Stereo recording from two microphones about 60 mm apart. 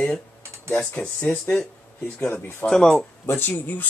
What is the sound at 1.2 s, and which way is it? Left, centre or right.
Speech, left.